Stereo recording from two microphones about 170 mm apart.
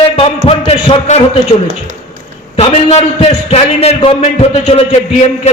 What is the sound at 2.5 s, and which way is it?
A man's voice, 35° left (ahead or behind).